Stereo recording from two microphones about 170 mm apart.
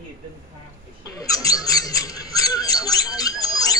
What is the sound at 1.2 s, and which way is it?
Speech, 20° left (ahead or behind).